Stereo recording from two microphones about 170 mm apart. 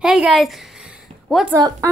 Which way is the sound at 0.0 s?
Centre (ahead or behind).